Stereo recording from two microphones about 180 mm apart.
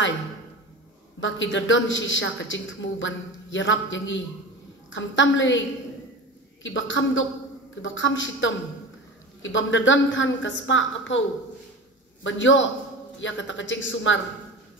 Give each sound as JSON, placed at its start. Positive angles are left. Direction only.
{"t": 1.2, "sound": "a woman's voice", "side_deg": 90}
{"t": 6.6, "sound": "a woman's voice", "side_deg": 90}